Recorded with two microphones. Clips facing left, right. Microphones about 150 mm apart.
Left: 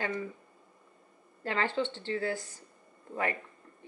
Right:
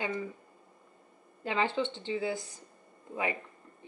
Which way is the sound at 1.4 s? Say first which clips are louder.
Right 1 dB; 15° right (ahead or behind).